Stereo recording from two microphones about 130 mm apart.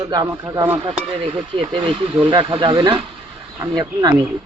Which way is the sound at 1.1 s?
40° right (ahead or behind).